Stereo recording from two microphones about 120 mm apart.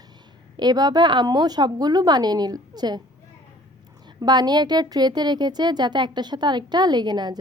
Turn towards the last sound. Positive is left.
turn(degrees=-35)  # may be behind; listen again after turning